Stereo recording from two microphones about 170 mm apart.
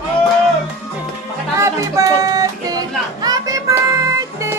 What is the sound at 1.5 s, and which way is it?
Music, 20° right (ahead or behind).